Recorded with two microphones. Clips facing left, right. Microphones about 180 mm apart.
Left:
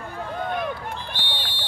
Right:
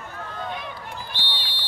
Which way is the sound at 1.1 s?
50° left (ahead or behind).